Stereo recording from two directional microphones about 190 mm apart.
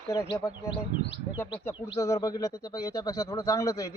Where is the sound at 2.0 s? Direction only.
15° left (ahead or behind).